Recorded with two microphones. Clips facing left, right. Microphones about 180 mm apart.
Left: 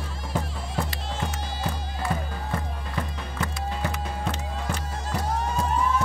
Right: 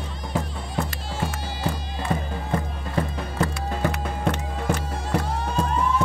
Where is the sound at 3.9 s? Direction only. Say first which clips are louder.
Right 4 dB; 60° right (ahead or behind).